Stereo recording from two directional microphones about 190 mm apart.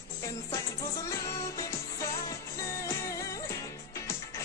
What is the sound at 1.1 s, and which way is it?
Music, 15° left (ahead or behind).